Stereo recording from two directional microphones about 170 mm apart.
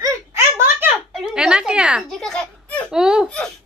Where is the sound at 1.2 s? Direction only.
5° right (ahead or behind).